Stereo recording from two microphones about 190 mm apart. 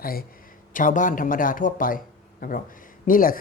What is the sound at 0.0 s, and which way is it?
Speech, 50° left (ahead or behind).